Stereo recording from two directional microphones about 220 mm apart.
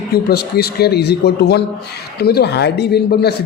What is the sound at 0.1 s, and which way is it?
A man's voice, 45° left (ahead or behind).